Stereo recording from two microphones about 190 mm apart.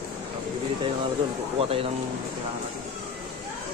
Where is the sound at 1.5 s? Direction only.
30° right (ahead or behind).